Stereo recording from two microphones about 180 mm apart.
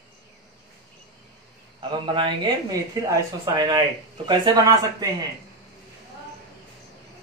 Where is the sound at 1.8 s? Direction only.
25° right (ahead or behind).